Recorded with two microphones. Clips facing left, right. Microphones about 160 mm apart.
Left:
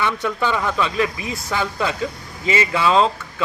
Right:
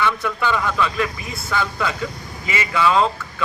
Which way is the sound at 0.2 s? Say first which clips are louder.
Left 1 dB; 35° left (ahead or behind).